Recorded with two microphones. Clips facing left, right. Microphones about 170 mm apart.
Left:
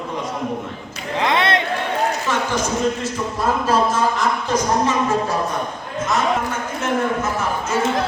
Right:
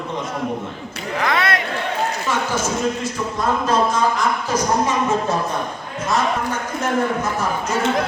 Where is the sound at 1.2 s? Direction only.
25° left (ahead or behind).